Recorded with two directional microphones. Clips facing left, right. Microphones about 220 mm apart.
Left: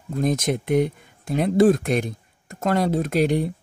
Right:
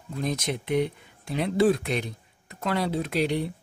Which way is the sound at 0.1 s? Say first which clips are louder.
Left 7 dB; 50° left (ahead or behind).